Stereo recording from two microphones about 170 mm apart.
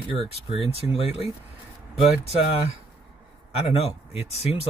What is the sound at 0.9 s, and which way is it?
Speech, 35° left (ahead or behind).